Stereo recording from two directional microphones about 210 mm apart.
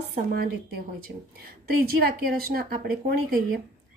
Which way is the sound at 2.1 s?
45° right (ahead or behind).